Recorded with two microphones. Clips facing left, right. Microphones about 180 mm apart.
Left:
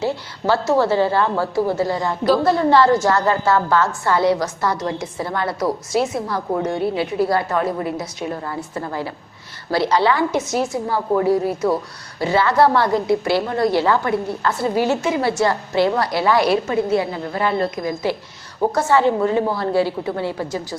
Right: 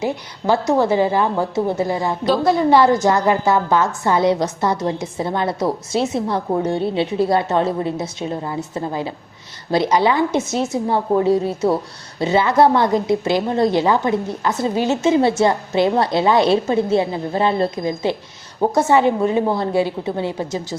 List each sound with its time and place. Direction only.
0.0 s a woman's voice: 15° right (ahead or behind)
2.2 s a woman's voice: centre (ahead or behind)
2.6 s a woman's voice: 15° right (ahead or behind)